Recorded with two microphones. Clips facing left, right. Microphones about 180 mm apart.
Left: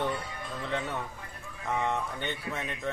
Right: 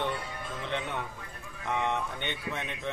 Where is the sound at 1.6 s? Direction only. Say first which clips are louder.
Even; centre (ahead or behind).